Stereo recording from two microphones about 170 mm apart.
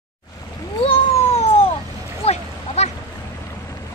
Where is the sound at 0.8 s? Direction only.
35° left (ahead or behind).